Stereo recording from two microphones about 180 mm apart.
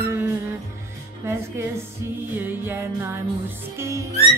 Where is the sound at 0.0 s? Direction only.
15° right (ahead or behind).